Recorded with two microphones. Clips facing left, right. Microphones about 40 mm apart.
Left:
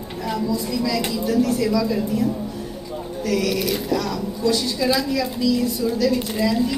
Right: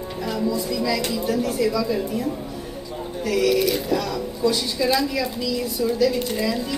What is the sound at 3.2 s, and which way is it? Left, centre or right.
Speech, centre.